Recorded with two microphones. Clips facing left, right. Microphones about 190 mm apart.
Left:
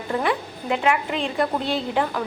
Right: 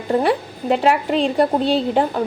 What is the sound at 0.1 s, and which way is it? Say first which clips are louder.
A woman's voice: right 6 dB; 35° right (ahead or behind).